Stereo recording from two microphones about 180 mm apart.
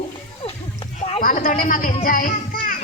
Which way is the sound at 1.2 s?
50° left (ahead or behind).